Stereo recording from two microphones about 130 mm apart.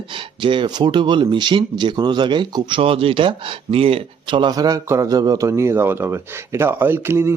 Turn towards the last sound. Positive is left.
turn(degrees=-20)  # may be behind; listen again after turning